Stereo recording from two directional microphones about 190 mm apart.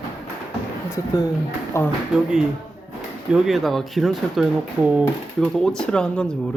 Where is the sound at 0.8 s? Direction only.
15° left (ahead or behind).